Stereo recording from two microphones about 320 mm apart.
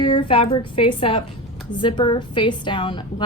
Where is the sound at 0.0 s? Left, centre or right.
Centre.